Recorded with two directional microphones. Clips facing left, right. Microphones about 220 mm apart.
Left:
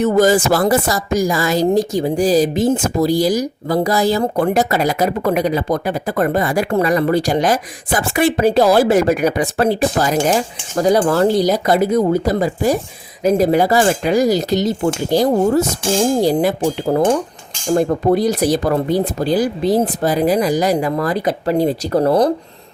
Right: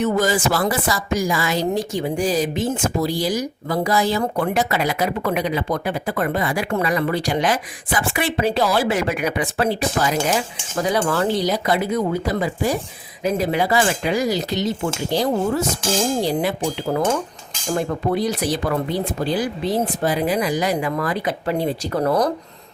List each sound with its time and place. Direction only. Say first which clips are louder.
0.0 s speech: left 6 dB; 45° left (ahead or behind)